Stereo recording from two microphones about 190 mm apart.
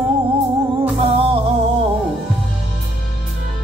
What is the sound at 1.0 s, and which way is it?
Music, 30° right (ahead or behind).